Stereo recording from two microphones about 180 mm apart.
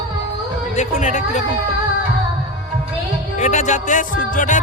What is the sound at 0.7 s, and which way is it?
Speech, 40° left (ahead or behind).